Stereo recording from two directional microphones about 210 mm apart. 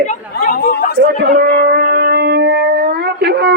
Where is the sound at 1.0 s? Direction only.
50° right (ahead or behind).